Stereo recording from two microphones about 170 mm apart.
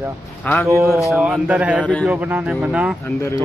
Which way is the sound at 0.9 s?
Centre (ahead or behind).